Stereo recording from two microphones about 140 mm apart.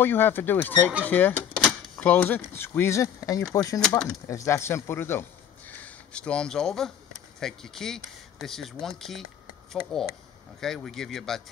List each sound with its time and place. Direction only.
0.0 s speech: 15° left (ahead or behind)
10.6 s speech: 5° left (ahead or behind)